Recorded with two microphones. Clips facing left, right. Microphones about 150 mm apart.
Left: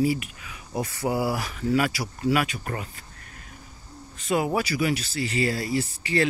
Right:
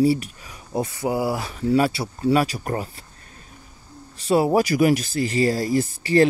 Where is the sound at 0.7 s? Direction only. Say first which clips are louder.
Right 3 dB; 20° right (ahead or behind); by 2.9 s 35° right (ahead or behind).